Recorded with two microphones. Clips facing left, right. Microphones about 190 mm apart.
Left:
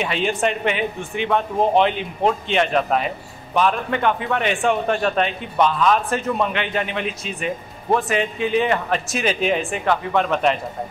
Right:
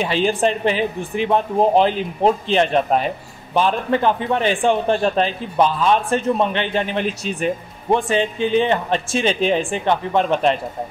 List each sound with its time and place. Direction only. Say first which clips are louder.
0.0 s a man's voice: right 3 dB; 30° right (ahead or behind)